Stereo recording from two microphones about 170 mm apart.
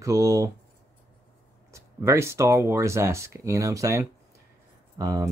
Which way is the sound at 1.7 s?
15° right (ahead or behind).